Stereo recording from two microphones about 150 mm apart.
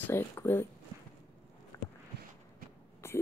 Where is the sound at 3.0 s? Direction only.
20° left (ahead or behind).